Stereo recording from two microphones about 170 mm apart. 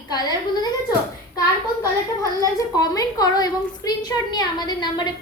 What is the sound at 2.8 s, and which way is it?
A woman's voice, 20° left (ahead or behind).